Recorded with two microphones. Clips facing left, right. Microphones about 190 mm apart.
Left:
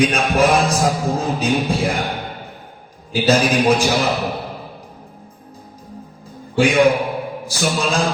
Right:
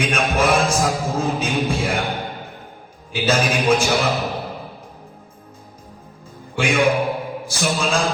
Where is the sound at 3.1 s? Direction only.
35° left (ahead or behind).